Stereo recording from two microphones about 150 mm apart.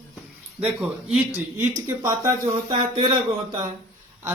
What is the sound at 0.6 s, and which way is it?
Speech, 5° right (ahead or behind).